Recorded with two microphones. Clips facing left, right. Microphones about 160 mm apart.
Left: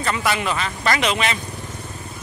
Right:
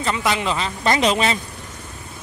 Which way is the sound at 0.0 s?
20° right (ahead or behind).